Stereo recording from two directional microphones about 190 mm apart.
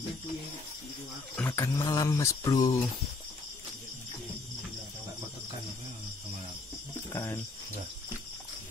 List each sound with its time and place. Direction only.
1.3 s speech: 10° left (ahead or behind)
7.1 s speech: 15° left (ahead or behind)